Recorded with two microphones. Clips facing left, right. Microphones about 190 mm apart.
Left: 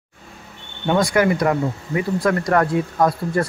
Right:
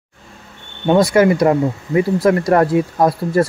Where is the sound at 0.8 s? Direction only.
25° right (ahead or behind).